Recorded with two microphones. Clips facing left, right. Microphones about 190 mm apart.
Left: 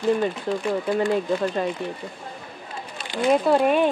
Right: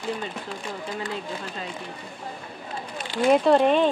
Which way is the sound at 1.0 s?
55° left (ahead or behind).